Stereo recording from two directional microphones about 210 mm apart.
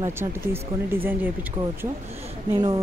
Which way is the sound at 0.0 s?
10° right (ahead or behind).